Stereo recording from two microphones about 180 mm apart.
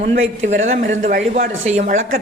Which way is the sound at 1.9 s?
50° right (ahead or behind).